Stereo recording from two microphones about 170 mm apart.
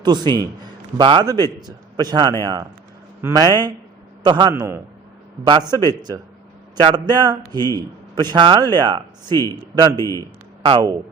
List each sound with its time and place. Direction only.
0.0 s a man's voice: 25° right (ahead or behind)
4.5 s a man's voice: 15° right (ahead or behind)
5.4 s a man's voice: 25° right (ahead or behind)
10.0 s a man's voice: 15° left (ahead or behind)
10.6 s speech: 30° right (ahead or behind)